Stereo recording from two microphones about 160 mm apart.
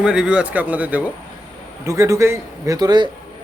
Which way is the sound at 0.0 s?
5° right (ahead or behind).